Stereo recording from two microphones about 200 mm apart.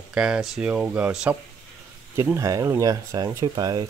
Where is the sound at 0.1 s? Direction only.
5° right (ahead or behind).